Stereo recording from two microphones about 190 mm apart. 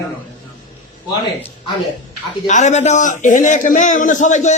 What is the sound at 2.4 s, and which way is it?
A man's voice, 40° left (ahead or behind).